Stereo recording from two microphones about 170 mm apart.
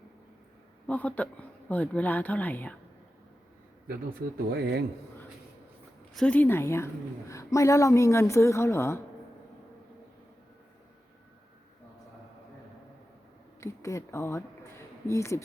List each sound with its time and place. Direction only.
0.9 s a woman's voice: 10° left (ahead or behind)
4.5 s speech: 70° right (ahead or behind)
6.1 s a woman's voice: 5° left (ahead or behind)
13.6 s a woman's voice: 15° left (ahead or behind)